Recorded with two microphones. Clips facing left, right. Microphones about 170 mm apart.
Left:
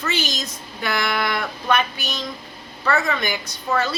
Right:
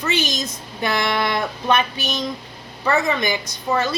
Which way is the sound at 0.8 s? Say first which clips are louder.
Right 2 dB; 20° right (ahead or behind).